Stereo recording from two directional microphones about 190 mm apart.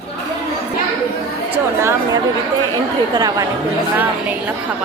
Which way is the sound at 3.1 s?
20° right (ahead or behind).